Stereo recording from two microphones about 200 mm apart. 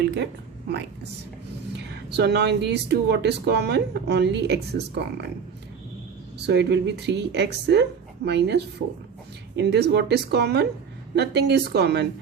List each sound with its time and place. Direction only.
1.7 s speech: 55° right (ahead or behind)
6.4 s speech: 55° right (ahead or behind)